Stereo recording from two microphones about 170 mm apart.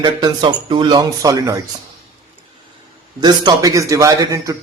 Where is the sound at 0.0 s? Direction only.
25° right (ahead or behind).